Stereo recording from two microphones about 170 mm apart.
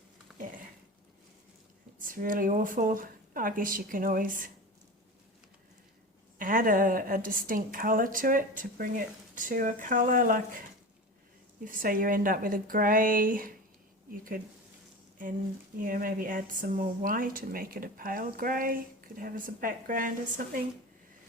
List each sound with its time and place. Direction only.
2.0 s a woman's voice: 55° right (ahead or behind)
6.4 s a woman's voice: 55° right (ahead or behind)
11.6 s a woman's voice: 55° right (ahead or behind)
15.8 s a woman's voice: 55° right (ahead or behind)